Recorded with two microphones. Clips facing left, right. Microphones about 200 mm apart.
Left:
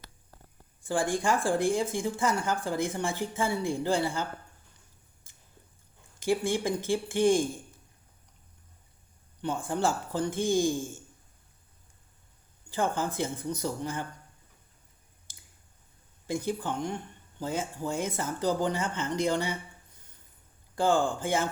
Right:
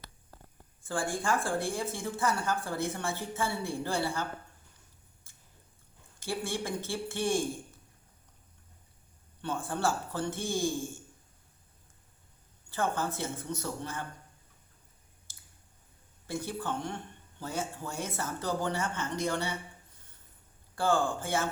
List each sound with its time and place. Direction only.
0.8 s a sound: 15° left (ahead or behind)
1.2 s speech: 15° left (ahead or behind)
6.1 s speech: 15° left (ahead or behind)
9.4 s speech: 15° left (ahead or behind)
12.7 s speech: 15° left (ahead or behind)
16.2 s speech: 15° left (ahead or behind)
20.7 s speech: 15° left (ahead or behind)